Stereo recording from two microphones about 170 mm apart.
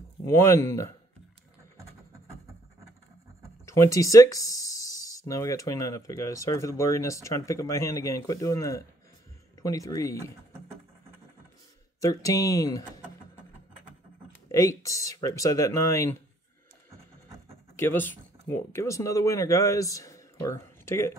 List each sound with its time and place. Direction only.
0.2 s speech: 15° left (ahead or behind)
3.6 s speech: 15° left (ahead or behind)
12.0 s speech: 20° left (ahead or behind)
14.5 s speech: 20° left (ahead or behind)
17.7 s speech: 10° left (ahead or behind)